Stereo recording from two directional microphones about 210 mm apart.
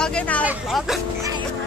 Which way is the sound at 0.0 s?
5° left (ahead or behind).